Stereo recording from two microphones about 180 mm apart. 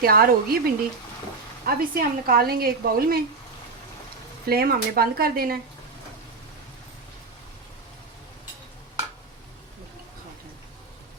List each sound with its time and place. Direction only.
0.0 s speech: 55° right (ahead or behind)
4.4 s speech: 55° right (ahead or behind)